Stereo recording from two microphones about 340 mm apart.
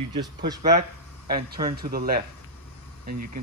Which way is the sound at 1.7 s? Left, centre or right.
Right.